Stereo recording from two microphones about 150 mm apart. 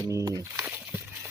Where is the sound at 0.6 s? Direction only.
10° right (ahead or behind).